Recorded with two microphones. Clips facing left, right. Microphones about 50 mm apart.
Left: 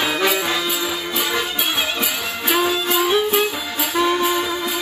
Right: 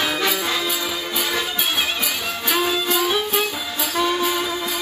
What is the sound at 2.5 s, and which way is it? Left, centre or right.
Music, centre.